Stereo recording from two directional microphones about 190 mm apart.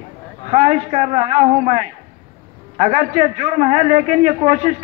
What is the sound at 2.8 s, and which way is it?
A man's voice, 35° right (ahead or behind).